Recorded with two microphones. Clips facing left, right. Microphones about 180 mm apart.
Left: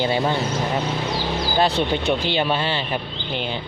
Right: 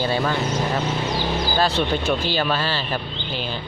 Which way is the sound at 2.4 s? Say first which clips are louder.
Left 1 dB; 20° left (ahead or behind).